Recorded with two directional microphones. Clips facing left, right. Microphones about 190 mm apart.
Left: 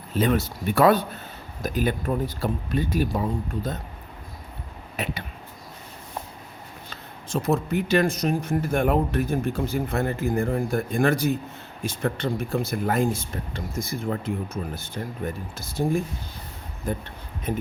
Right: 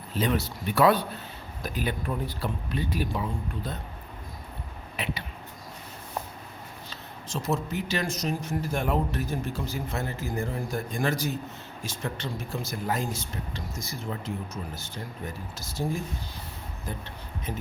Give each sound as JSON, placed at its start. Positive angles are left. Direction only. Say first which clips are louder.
{"t": 0.2, "sound": "speech", "louder": "left 5 dB", "side_deg": 50}
{"t": 5.0, "sound": "speech", "louder": "left 3 dB", "side_deg": 45}
{"t": 6.9, "sound": "speech", "louder": "left 7 dB", "side_deg": 55}
{"t": 17.5, "sound": "speech", "louder": "left 8 dB", "side_deg": 55}